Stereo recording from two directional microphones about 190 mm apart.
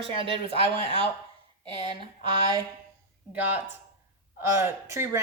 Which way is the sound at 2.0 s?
25° right (ahead or behind).